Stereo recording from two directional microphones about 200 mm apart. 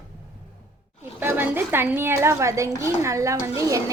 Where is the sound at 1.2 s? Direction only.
10° right (ahead or behind).